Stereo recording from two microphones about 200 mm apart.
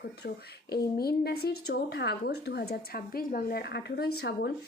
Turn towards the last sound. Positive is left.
turn(degrees=60)  # may be behind; listen again after turning